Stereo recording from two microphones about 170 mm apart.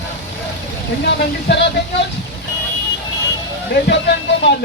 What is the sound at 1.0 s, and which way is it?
Speech, 85° left.